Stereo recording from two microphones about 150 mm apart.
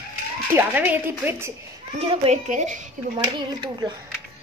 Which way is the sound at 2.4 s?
55° right (ahead or behind).